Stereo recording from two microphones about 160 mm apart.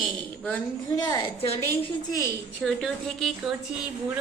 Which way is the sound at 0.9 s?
25° left (ahead or behind).